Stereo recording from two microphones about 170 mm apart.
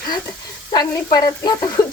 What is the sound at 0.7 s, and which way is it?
Stir, 20° left (ahead or behind).